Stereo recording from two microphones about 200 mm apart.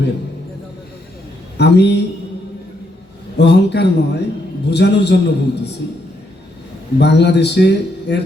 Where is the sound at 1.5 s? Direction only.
55° left (ahead or behind).